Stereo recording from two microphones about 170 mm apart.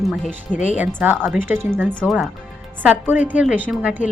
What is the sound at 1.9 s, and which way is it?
Speech, 5° left (ahead or behind).